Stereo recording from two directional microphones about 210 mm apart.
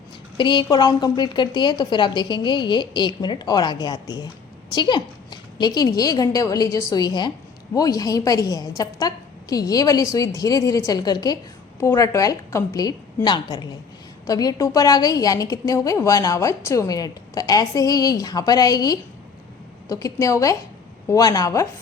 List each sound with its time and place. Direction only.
0.3 s a woman's voice: 20° left (ahead or behind)